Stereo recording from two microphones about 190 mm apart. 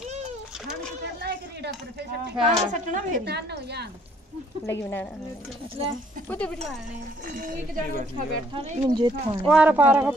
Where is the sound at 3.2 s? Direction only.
60° right (ahead or behind).